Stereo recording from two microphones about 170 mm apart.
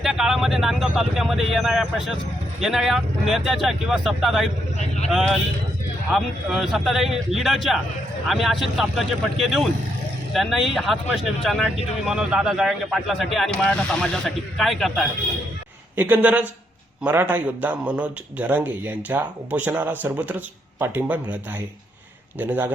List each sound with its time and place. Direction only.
0.0 s vehicle: centre (ahead or behind)
2.6 s speech: 5° right (ahead or behind)
4.8 s speech: 40° left (ahead or behind)
5.1 s speech: centre (ahead or behind)
16.0 s a man's voice: 10° right (ahead or behind)
22.4 s a man's voice: 10° right (ahead or behind)